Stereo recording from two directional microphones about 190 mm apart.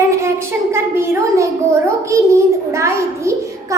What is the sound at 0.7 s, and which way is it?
A child's voice, 15° right (ahead or behind).